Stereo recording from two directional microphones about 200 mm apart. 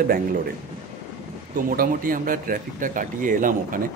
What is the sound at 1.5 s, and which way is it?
Speech, 45° right (ahead or behind).